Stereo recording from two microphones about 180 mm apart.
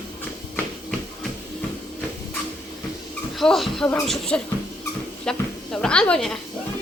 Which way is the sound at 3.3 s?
Centre (ahead or behind).